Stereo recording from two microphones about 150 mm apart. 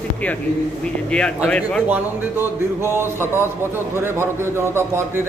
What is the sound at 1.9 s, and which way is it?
A man's voice, 15° right (ahead or behind).